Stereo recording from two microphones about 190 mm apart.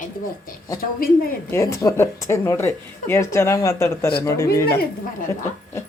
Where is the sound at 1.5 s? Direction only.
15° left (ahead or behind).